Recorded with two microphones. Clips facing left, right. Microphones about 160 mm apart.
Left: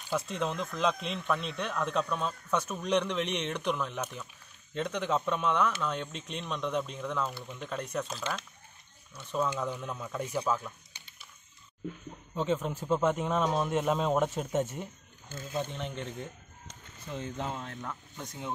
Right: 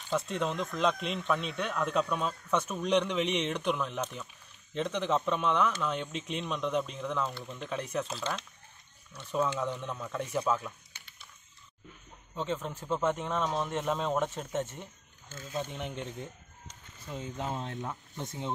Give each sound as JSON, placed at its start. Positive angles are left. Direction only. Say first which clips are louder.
{"t": 0.1, "sound": "speech", "louder": "right 1 dB", "side_deg": 0}
{"t": 10.9, "sound": "a sound", "louder": "even", "side_deg": 15}
{"t": 12.4, "sound": "speech", "louder": "left 4 dB", "side_deg": 5}
{"t": 15.7, "sound": "speech", "louder": "even", "side_deg": -15}